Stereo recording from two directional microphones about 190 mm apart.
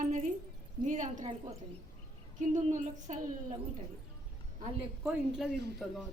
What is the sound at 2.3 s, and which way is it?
A woman's voice, 40° right (ahead or behind).